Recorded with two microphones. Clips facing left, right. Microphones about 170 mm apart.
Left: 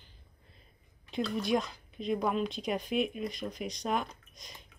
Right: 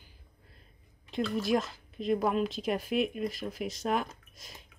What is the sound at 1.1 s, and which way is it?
A woman's voice, centre (ahead or behind).